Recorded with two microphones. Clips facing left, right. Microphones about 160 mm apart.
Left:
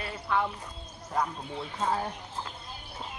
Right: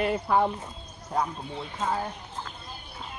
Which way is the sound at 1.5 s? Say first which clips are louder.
Even; centre (ahead or behind).